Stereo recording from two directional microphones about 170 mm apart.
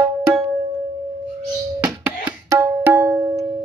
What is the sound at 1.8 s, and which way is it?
Tabla, 15° right (ahead or behind).